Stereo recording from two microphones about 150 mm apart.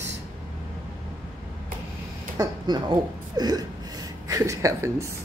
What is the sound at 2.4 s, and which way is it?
Speech, 30° right (ahead or behind).